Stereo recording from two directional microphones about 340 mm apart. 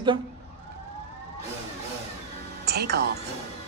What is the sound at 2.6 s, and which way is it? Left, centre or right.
Music, right.